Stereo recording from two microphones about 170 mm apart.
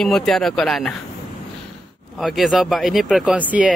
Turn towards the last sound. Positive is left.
turn(degrees=-5)  # may be behind; listen again after turning